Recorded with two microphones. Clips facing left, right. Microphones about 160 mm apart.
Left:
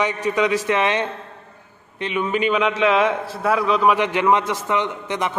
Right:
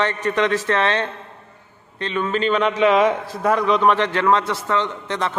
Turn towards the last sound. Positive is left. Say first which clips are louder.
# even
turn(degrees=15)  # may be behind; listen again after turning